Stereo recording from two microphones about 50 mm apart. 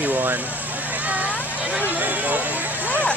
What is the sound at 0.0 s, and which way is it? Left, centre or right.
Vehicle, right.